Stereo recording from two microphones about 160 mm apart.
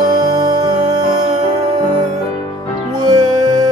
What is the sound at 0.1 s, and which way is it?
Music, 25° right (ahead or behind).